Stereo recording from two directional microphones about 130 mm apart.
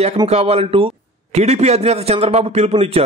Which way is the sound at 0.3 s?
50° right (ahead or behind).